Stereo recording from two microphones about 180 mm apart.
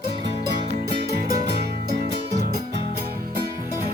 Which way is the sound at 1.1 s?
60° right (ahead or behind).